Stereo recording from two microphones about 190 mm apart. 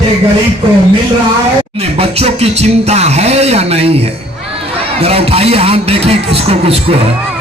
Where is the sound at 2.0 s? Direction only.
30° right (ahead or behind).